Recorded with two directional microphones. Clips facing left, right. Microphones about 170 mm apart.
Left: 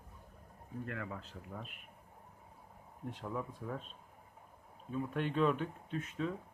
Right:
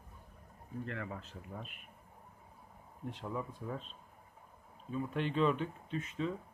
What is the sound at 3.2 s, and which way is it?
Speech, centre (ahead or behind).